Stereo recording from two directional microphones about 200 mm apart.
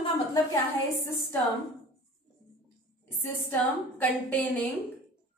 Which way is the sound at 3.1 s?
10° left (ahead or behind).